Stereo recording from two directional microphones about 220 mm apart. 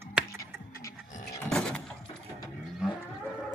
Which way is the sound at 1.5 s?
5° left (ahead or behind).